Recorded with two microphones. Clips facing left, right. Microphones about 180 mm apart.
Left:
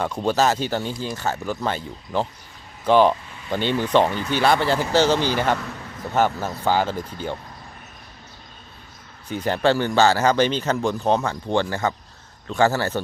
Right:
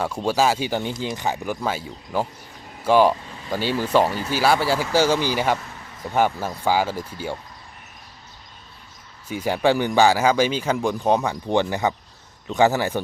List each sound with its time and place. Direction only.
0.3 s speech: 10° right (ahead or behind)
9.3 s speech: 10° right (ahead or behind)